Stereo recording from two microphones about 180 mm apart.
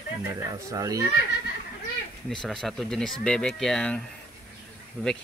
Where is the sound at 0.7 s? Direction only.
20° right (ahead or behind).